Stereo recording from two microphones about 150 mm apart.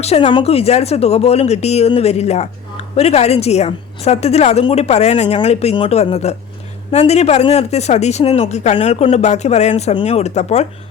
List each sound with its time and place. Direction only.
0.0 s speech: 40° left (ahead or behind)